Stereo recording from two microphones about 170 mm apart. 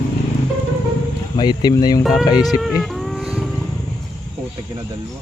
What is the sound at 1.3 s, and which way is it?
Speech, 25° left (ahead or behind).